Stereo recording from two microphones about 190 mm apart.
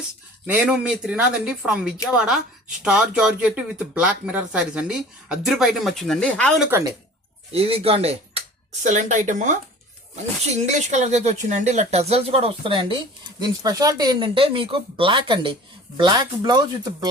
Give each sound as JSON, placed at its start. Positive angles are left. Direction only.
{"t": 0.4, "sound": "speech", "side_deg": -10}
{"t": 6.7, "sound": "speech", "side_deg": -15}
{"t": 7.5, "sound": "speech", "side_deg": -30}